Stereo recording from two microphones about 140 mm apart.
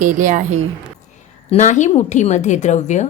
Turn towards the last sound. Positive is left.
turn(degrees=55)  # may be behind; listen again after turning